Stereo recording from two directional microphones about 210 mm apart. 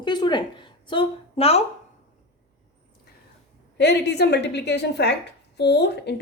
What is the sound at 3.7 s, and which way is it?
A woman's voice, 55° left (ahead or behind).